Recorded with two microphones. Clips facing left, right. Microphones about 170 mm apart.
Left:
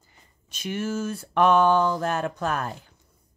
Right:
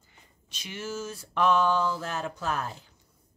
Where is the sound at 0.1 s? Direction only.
50° left (ahead or behind).